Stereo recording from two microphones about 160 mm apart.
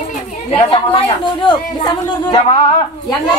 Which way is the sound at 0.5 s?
30° left (ahead or behind).